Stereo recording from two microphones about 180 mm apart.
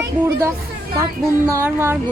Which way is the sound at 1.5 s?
15° right (ahead or behind).